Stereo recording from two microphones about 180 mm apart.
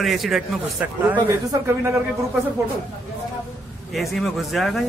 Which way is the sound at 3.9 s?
Centre (ahead or behind).